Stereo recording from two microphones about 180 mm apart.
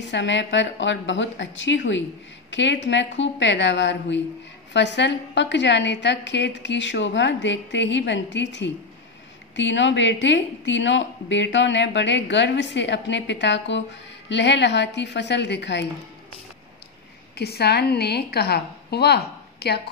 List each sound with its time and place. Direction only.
0.0 s a woman's voice: 85° left
17.4 s a woman's voice: 65° left (ahead or behind)